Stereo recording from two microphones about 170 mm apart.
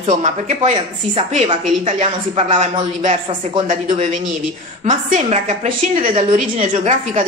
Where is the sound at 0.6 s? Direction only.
35° right (ahead or behind).